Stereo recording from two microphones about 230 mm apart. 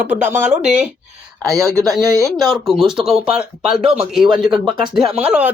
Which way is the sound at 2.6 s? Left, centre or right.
Centre.